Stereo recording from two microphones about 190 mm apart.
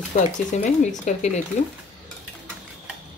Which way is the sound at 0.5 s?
40° left (ahead or behind).